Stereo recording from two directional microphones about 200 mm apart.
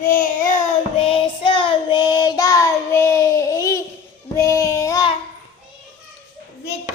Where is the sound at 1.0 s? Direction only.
30° left (ahead or behind).